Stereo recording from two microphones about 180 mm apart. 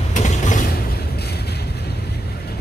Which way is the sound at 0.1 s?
45° left (ahead or behind).